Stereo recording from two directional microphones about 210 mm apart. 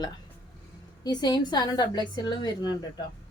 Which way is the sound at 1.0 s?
20° left (ahead or behind).